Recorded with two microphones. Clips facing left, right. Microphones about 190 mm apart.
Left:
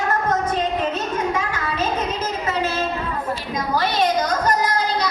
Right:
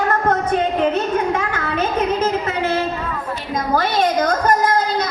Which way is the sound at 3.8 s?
50° right (ahead or behind).